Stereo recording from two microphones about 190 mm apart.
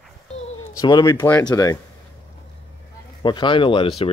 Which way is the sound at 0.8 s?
20° left (ahead or behind).